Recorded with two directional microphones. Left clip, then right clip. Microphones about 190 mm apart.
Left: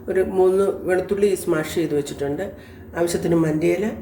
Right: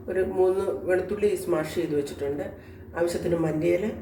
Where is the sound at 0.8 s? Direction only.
40° left (ahead or behind).